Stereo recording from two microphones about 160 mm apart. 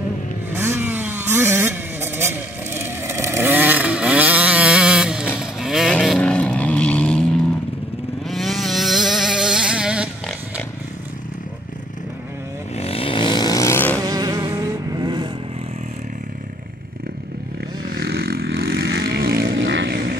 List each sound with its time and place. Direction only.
0.5 s a sound: 15° right (ahead or behind)
5.4 s vehicle: 5° right (ahead or behind)
12.7 s vehicle: 40° left (ahead or behind); by 14.0 s 10° left (ahead or behind)
14.0 s vehicle: 25° right (ahead or behind)
17.9 s vehicle: 75° right (ahead or behind)